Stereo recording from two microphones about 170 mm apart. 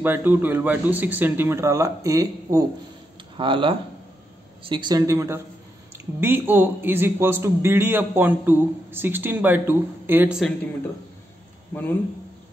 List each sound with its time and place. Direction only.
0.0 s a man's voice: 10° right (ahead or behind)